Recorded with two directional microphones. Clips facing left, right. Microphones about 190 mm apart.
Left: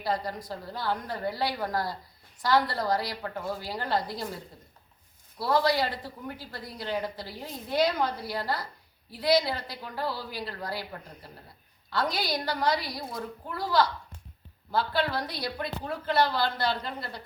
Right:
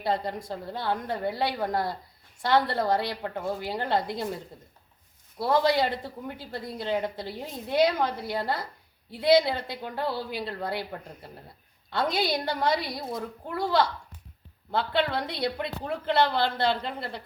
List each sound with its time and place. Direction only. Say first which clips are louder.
0.0 s speech: right 2 dB; 25° right (ahead or behind)
5.4 s speech: right 2 dB; 20° right (ahead or behind)